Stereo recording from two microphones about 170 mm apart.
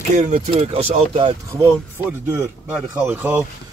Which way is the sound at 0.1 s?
45° right (ahead or behind).